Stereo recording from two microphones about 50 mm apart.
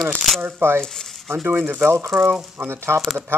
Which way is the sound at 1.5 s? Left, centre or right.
Right.